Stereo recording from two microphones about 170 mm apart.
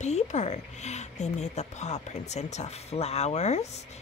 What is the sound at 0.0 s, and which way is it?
A woman's voice, 45° left (ahead or behind).